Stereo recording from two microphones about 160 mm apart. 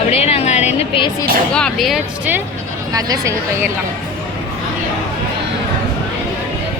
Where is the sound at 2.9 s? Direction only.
20° right (ahead or behind).